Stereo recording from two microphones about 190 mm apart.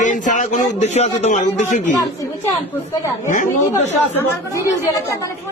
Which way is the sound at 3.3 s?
40° left (ahead or behind).